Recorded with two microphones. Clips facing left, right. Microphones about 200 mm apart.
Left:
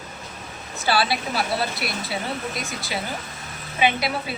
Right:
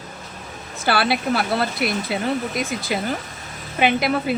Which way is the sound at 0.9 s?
60° right (ahead or behind).